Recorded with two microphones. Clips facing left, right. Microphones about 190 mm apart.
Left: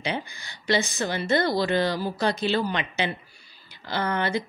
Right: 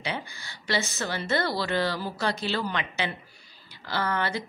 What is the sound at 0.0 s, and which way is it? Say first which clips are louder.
A woman's voice: left 3 dB; 20° left (ahead or behind).